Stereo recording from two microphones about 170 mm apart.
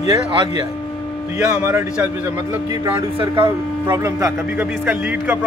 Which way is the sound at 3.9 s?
15° right (ahead or behind).